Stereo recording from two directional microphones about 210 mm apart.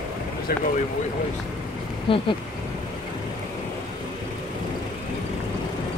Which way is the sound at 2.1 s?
25° left (ahead or behind).